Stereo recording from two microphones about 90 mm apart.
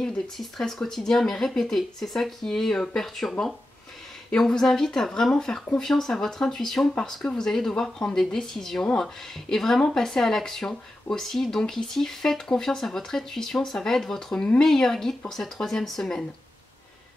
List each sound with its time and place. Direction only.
0.0 s speech: 5° left (ahead or behind)